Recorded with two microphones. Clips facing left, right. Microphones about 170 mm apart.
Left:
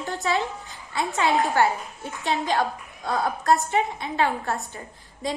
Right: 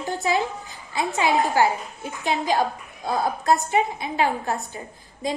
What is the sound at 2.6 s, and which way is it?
Speech, 40° right (ahead or behind).